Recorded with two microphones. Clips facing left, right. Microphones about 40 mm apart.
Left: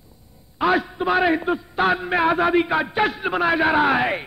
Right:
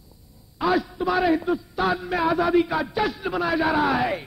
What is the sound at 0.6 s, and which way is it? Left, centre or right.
A man's voice, left.